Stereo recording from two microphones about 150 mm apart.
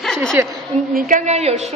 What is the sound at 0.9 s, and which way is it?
Speech, 60° right (ahead or behind).